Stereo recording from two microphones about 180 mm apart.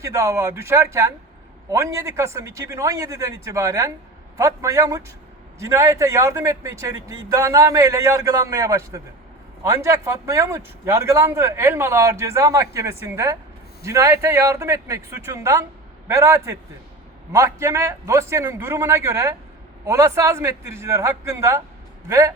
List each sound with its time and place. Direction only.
0.0 s speech: 15° right (ahead or behind)